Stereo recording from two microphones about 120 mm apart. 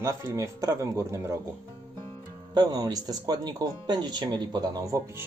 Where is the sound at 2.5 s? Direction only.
35° right (ahead or behind).